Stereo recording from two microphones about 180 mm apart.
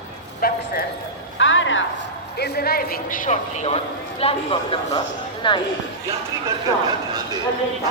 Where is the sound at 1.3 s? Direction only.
90° left.